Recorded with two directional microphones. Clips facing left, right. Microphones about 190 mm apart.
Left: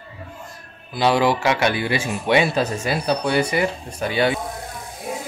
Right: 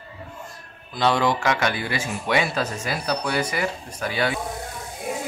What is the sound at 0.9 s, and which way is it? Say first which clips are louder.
Speech: left 3 dB; 5° left (ahead or behind).